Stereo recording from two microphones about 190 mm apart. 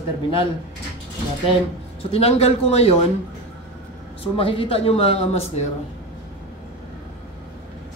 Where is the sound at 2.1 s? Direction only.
30° left (ahead or behind).